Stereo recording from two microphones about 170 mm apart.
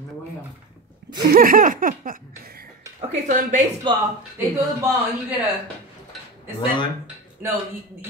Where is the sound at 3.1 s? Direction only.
45° right (ahead or behind).